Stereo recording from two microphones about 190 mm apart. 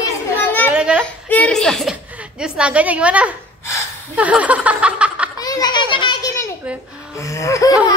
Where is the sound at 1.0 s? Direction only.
5° left (ahead or behind).